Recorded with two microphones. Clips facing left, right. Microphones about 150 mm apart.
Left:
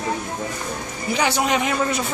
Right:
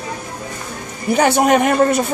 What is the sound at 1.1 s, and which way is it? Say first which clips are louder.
Speech: right 8 dB; 50° right (ahead or behind).